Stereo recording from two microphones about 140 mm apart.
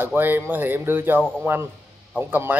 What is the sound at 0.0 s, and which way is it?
A man's voice, 15° right (ahead or behind).